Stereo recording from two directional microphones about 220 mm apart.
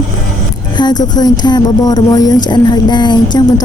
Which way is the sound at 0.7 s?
20° left (ahead or behind).